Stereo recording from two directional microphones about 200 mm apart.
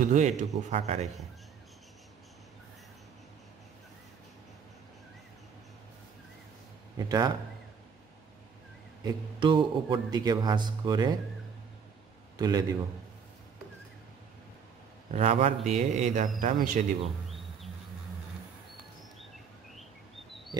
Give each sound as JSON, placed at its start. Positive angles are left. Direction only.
{"t": 0.0, "sound": "a man's voice", "side_deg": -35}
{"t": 7.0, "sound": "speech", "side_deg": -20}
{"t": 9.0, "sound": "a man's voice", "side_deg": -25}
{"t": 12.4, "sound": "speech", "side_deg": -20}
{"t": 15.0, "sound": "a man's voice", "side_deg": -35}